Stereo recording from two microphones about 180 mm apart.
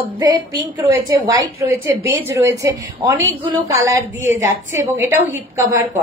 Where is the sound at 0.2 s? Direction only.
25° right (ahead or behind).